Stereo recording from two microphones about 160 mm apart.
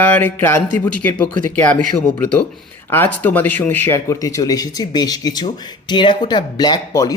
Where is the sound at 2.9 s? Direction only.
10° left (ahead or behind).